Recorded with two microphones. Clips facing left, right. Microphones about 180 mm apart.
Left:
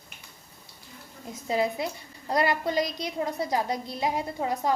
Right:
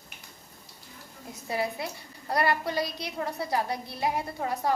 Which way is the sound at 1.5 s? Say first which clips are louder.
Left 4 dB; 20° left (ahead or behind).